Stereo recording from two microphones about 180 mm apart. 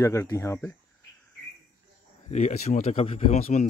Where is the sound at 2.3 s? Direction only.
40° left (ahead or behind).